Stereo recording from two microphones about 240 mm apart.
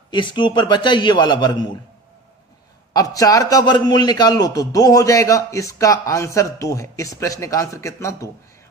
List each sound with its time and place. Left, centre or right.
0.1 s a man's voice: centre
2.9 s a man's voice: centre